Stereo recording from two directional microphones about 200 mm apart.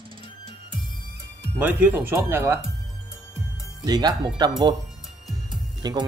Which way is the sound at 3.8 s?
20° right (ahead or behind).